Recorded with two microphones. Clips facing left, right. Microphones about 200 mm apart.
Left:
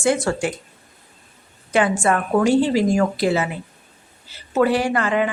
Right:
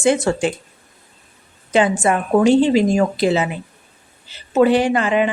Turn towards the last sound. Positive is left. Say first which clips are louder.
# right 3 dB
turn(degrees=-20)  # may be behind; listen again after turning